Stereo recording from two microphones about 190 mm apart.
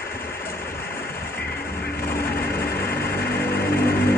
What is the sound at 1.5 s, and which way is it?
Vehicle, 50° left (ahead or behind).